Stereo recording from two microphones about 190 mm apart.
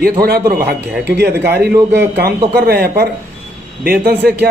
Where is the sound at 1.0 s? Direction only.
60° right (ahead or behind).